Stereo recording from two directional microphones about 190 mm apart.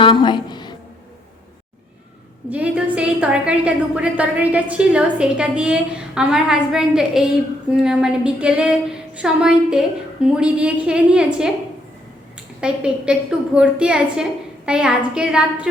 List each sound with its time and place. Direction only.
0.0 s a sound: 25° left (ahead or behind)
2.5 s a woman's voice: 5° right (ahead or behind)
12.5 s a woman's voice: 5° right (ahead or behind)